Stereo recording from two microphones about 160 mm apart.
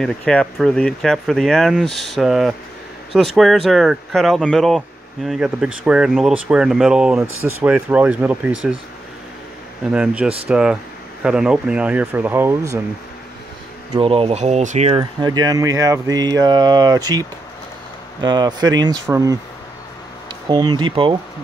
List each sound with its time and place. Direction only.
0.0 s speech: 5° left (ahead or behind)
9.9 s speech: 5° right (ahead or behind)
13.9 s speech: 35° right (ahead or behind)
15.2 s speech: 25° right (ahead or behind)
18.2 s speech: 25° right (ahead or behind)
20.4 s speech: 25° right (ahead or behind)